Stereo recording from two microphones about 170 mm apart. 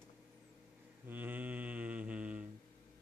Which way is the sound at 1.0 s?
10° right (ahead or behind).